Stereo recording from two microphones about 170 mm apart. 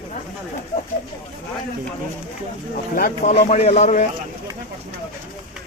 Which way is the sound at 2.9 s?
55° left (ahead or behind).